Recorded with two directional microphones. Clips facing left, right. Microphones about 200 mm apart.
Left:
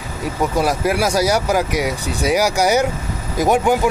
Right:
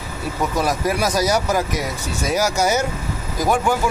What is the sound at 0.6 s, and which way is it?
Speech, 10° left (ahead or behind).